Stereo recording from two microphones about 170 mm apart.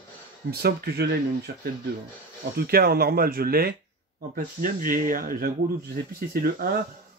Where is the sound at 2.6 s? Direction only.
65° right (ahead or behind).